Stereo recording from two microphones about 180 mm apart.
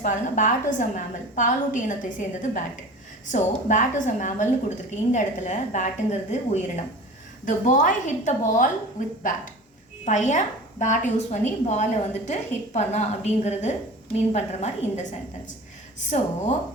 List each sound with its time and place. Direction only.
0.0 s a woman's voice: 45° left (ahead or behind)
16.0 s a woman's voice: 40° left (ahead or behind)